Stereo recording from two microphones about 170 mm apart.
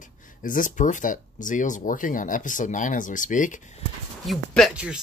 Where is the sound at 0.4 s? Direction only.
50° left (ahead or behind).